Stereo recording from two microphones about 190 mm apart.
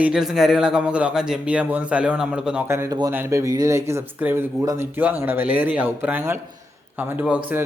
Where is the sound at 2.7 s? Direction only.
15° right (ahead or behind).